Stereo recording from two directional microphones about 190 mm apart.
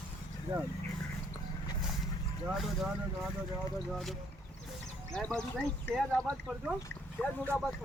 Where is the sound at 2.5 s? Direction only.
Centre (ahead or behind).